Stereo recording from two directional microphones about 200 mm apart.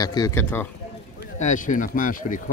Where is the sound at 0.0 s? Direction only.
20° left (ahead or behind).